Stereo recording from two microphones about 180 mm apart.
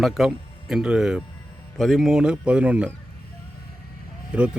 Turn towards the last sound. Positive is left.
turn(degrees=-5)  # may be behind; listen again after turning